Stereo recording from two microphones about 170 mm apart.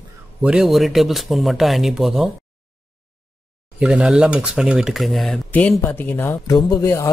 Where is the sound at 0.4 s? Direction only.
5° right (ahead or behind).